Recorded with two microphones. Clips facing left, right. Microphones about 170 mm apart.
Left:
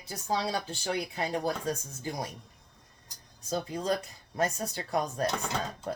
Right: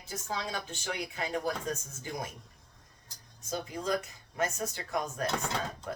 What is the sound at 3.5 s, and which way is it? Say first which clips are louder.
Speech: left 2 dB; 30° left (ahead or behind).